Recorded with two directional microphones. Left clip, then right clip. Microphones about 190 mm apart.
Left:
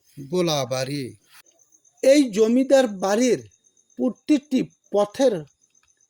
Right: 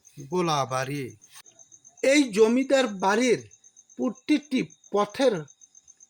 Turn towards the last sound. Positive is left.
turn(degrees=35)  # may be behind; listen again after turning